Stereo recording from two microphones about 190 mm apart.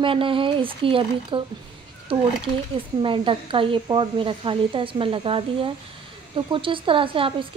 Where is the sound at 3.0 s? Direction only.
25° right (ahead or behind).